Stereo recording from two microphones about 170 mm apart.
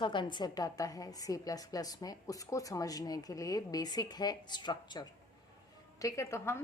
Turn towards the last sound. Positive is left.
turn(degrees=15)  # may be behind; listen again after turning